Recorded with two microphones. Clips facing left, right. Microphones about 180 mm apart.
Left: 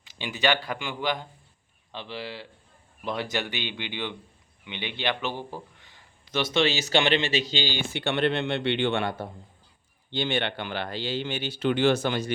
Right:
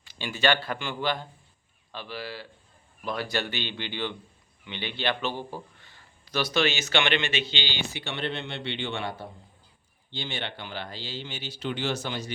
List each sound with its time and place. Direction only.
0.0 s speech: 15° left (ahead or behind); by 7.9 s 45° left (ahead or behind)
7.9 s speech: 60° left (ahead or behind)